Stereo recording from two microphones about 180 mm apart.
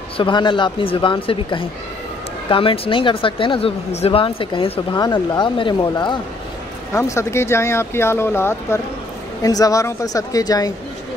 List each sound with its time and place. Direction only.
0.2 s speech: 25° left (ahead or behind)